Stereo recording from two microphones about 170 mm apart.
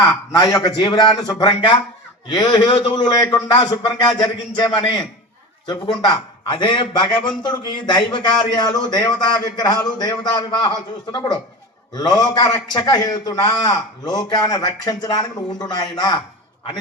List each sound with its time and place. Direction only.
0.0 s speech: 20° left (ahead or behind)